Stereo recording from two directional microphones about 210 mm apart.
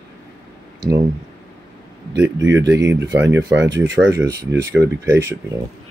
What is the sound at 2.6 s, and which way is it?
Speech, 15° right (ahead or behind).